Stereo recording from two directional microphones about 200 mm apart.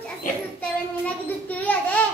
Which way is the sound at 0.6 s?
5° left (ahead or behind).